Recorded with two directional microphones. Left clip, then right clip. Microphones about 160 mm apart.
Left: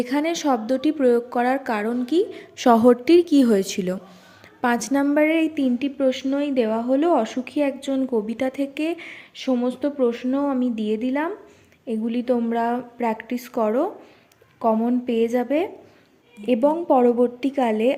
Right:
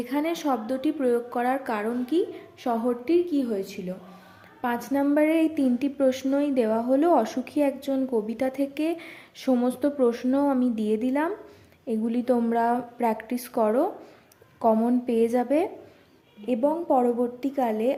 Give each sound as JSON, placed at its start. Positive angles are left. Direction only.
{"t": 0.0, "sound": "a woman's voice", "side_deg": 25}
{"t": 2.4, "sound": "a woman's voice", "side_deg": 50}
{"t": 4.6, "sound": "a woman's voice", "side_deg": 30}
{"t": 5.0, "sound": "a woman's voice", "side_deg": 15}
{"t": 16.5, "sound": "a woman's voice", "side_deg": 25}